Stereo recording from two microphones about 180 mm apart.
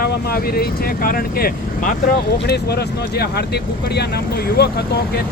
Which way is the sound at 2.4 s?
65° left (ahead or behind).